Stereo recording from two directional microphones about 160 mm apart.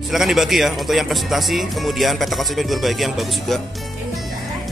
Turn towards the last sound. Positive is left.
turn(degrees=0)  # may be behind; listen again after turning